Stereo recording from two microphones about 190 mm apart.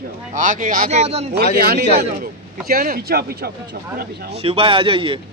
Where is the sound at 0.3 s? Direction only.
45° right (ahead or behind).